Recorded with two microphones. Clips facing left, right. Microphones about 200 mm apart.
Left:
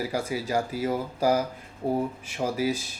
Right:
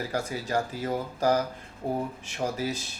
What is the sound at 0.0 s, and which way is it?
Speech, 10° left (ahead or behind).